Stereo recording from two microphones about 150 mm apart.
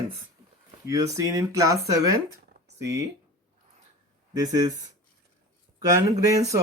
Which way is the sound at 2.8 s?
20° right (ahead or behind).